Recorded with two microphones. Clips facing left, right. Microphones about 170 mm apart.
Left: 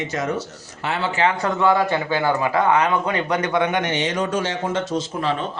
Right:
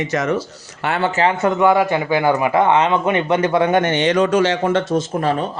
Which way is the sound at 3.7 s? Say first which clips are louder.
Right 7 dB; 55° right (ahead or behind).